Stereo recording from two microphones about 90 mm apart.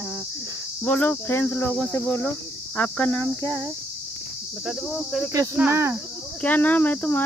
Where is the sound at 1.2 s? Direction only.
25° left (ahead or behind).